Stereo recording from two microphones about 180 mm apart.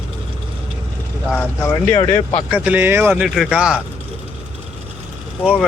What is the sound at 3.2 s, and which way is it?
Speech, centre (ahead or behind).